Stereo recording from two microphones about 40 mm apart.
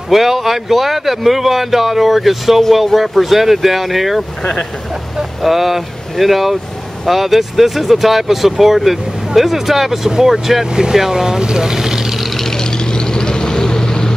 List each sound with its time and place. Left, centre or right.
0.1 s speech: centre
4.4 s speech: left
5.4 s speech: centre
10.7 s speech: centre
12.4 s vehicle: centre